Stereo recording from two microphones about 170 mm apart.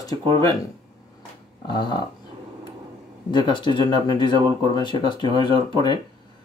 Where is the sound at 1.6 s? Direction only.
25° left (ahead or behind).